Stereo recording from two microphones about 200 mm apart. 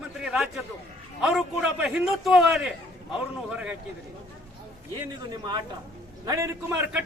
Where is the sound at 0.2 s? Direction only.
5° right (ahead or behind).